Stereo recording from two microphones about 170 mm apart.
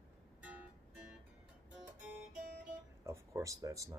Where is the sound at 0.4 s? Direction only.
10° right (ahead or behind).